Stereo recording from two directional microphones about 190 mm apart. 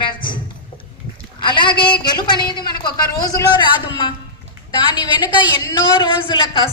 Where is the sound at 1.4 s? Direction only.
25° left (ahead or behind).